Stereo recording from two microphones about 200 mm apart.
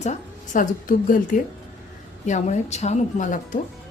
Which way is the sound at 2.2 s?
35° left (ahead or behind).